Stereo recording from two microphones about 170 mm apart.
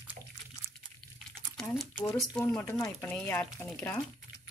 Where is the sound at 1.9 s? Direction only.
20° left (ahead or behind).